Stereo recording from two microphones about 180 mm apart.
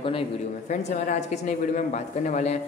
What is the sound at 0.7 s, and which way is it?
A man's voice, 40° left (ahead or behind).